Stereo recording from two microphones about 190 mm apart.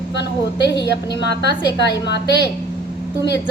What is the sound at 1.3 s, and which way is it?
Speech, 65° left (ahead or behind).